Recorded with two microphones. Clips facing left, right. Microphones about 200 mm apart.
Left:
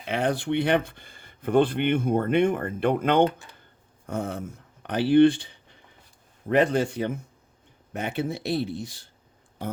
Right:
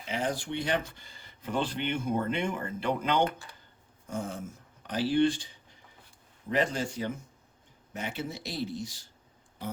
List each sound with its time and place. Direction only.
0.1 s speech: 65° left (ahead or behind)